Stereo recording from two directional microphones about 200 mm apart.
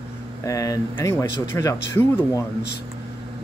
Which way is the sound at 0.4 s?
15° left (ahead or behind).